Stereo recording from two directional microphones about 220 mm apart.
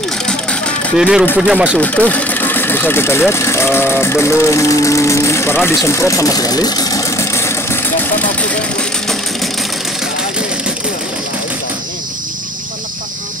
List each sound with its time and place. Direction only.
0.3 s music: 5° left (ahead or behind)
1.4 s speech: 5° right (ahead or behind)